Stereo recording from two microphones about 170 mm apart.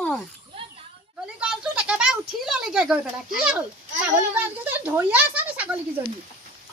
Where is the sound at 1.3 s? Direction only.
5° right (ahead or behind).